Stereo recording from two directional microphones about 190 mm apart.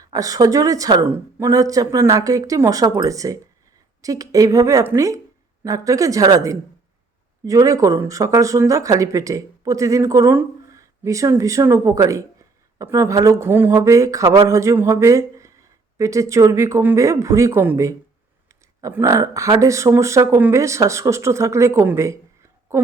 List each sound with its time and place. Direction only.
0.0 s a woman's voice: 20° right (ahead or behind)